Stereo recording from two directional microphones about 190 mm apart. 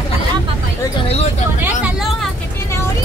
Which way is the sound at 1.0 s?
35° left (ahead or behind).